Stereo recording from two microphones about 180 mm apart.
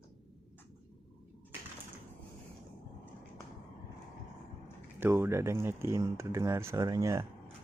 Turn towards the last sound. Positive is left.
turn(degrees=-15)  # may be behind; listen again after turning